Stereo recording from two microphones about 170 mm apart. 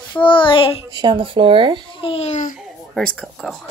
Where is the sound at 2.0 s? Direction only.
35° left (ahead or behind).